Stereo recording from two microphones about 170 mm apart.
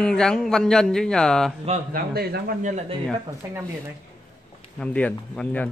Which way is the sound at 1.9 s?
65° right (ahead or behind).